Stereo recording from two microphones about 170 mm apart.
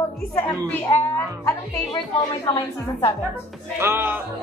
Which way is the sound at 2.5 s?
30° left (ahead or behind).